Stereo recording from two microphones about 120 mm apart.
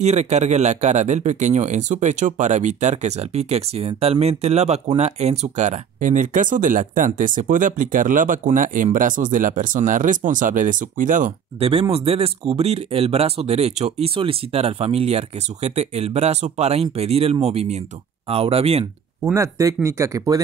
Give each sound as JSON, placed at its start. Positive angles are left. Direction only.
{"t": 0.0, "sound": "speech", "side_deg": -70}
{"t": 11.7, "sound": "speech", "side_deg": -55}
{"t": 18.3, "sound": "speech", "side_deg": -55}
{"t": 19.3, "sound": "speech", "side_deg": -25}